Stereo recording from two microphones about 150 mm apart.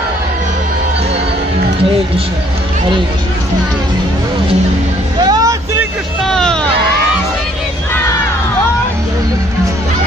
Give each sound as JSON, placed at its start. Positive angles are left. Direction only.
{"t": 5.2, "sound": "vehicle", "side_deg": -25}
{"t": 6.2, "sound": "hubbub", "side_deg": 5}